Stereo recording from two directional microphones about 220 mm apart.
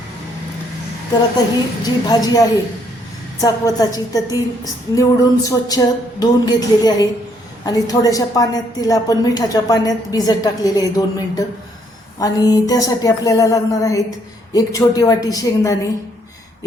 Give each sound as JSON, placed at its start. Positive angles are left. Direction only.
{"t": 1.8, "sound": "a woman's voice", "side_deg": 15}